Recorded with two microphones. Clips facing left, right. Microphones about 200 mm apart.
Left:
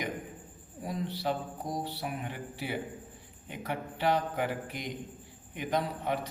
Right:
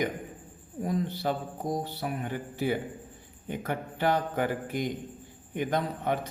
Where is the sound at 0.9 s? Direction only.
50° right (ahead or behind).